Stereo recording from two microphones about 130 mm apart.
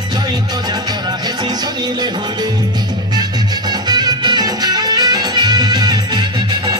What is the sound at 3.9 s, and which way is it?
Music, 30° right (ahead or behind).